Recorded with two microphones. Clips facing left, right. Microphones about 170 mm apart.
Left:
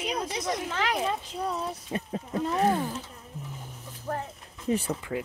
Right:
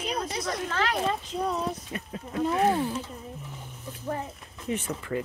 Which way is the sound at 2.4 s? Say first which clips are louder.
Right 2 dB; 5° right (ahead or behind).